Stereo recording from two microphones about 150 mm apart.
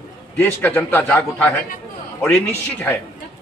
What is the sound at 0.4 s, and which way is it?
A man's voice, 15° left (ahead or behind).